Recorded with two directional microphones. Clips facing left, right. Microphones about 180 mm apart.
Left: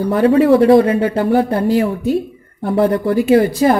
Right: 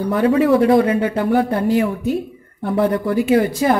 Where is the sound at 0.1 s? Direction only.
35° left (ahead or behind).